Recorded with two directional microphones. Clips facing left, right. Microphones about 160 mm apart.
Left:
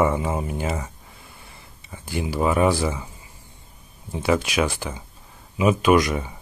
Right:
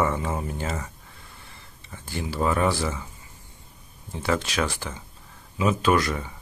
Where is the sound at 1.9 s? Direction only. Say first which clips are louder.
Left 5 dB; 15° left (ahead or behind).